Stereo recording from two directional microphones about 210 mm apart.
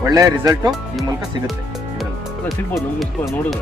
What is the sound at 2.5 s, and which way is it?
Speech, centre (ahead or behind).